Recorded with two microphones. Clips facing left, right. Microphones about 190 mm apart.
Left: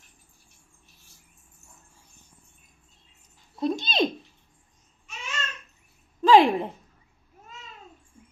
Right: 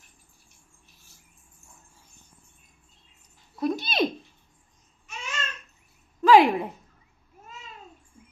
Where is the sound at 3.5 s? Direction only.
25° left (ahead or behind).